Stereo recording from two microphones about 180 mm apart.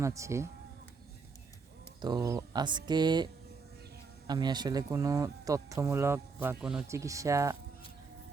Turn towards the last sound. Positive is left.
turn(degrees=-15)  # may be behind; listen again after turning